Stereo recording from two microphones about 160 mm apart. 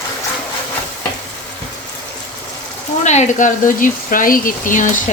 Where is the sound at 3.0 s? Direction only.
45° left (ahead or behind).